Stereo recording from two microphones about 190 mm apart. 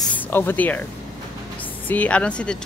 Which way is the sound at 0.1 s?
10° left (ahead or behind).